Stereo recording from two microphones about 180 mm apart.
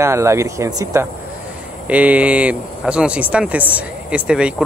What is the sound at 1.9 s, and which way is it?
Speech, 10° right (ahead or behind).